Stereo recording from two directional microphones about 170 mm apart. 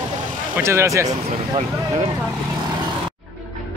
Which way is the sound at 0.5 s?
15° right (ahead or behind).